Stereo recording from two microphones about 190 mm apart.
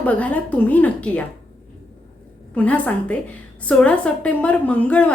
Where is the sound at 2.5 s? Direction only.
10° left (ahead or behind).